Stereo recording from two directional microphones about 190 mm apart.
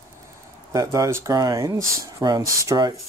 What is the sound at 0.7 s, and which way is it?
Speech, 15° right (ahead or behind).